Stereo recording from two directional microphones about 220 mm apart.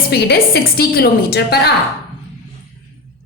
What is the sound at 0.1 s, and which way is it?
A woman's voice, 45° left (ahead or behind).